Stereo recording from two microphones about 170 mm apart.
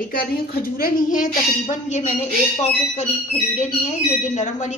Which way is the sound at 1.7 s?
45° left (ahead or behind).